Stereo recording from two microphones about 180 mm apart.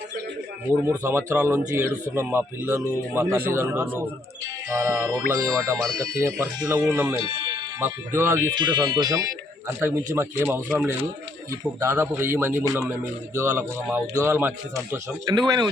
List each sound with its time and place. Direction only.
0.9 s speech: 15° right (ahead or behind)
7.3 s music: 25° right (ahead or behind)
7.8 s speech: 15° right (ahead or behind)
15.4 s speech: 25° right (ahead or behind)